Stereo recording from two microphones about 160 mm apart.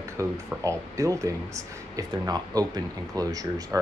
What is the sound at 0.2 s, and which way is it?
Speech, 20° right (ahead or behind).